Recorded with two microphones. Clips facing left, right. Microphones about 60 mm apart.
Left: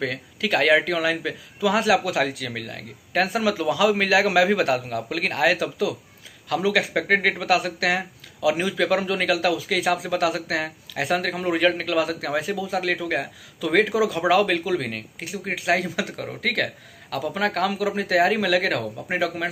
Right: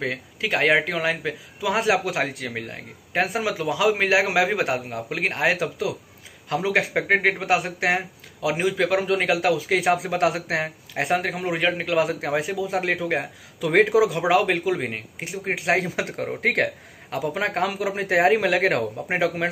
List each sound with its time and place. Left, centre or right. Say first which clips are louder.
0.0 s speech: left 1 dB; right
11.1 s a man's voice: left 1 dB; centre
11.8 s speech: right 1 dB; right